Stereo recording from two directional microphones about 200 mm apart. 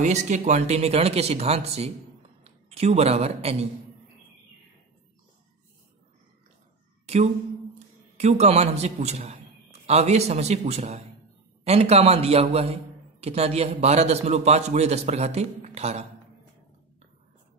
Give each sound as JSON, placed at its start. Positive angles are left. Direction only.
{"t": 0.0, "sound": "a man's voice", "side_deg": -35}
{"t": 8.2, "sound": "a man's voice", "side_deg": -35}